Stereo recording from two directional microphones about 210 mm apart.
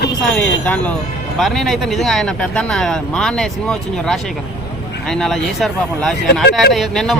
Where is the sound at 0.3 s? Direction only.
5° left (ahead or behind).